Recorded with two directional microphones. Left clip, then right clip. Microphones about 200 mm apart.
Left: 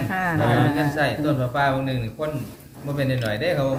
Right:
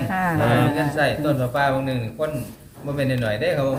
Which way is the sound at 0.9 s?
15° right (ahead or behind).